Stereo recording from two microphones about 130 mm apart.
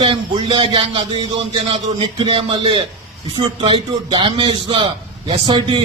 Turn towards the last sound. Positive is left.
turn(degrees=-35)  # may be behind; listen again after turning